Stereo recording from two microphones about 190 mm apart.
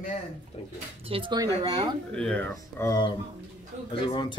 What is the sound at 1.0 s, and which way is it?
Speech, 30° right (ahead or behind).